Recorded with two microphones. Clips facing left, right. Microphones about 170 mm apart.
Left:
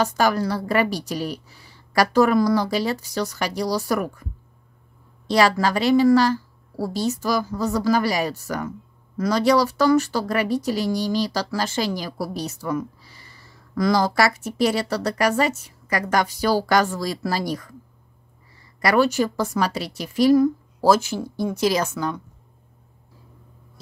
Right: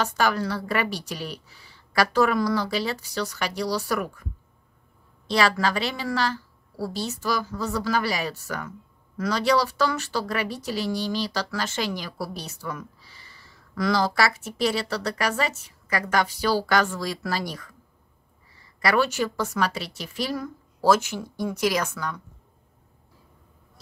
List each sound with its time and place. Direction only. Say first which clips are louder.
0.0 s a woman's voice: left 4 dB; 40° left (ahead or behind)
5.2 s a woman's voice: left 4 dB; 40° left (ahead or behind)
18.8 s a woman's voice: left 4 dB; 40° left (ahead or behind); by 22.2 s 25° left (ahead or behind)